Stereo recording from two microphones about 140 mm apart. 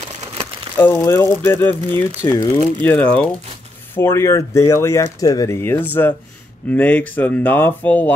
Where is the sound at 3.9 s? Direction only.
20° left (ahead or behind).